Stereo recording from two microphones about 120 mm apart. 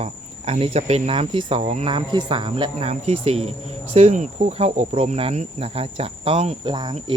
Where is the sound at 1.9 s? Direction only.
40° right (ahead or behind); by 3.5 s 55° right (ahead or behind).